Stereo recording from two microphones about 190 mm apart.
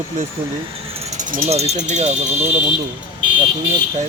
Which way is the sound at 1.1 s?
40° right (ahead or behind).